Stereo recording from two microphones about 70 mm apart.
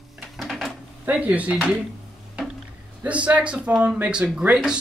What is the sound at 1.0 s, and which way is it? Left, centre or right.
Speech, right.